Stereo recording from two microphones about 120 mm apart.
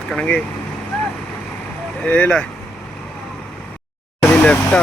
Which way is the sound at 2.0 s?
10° left (ahead or behind).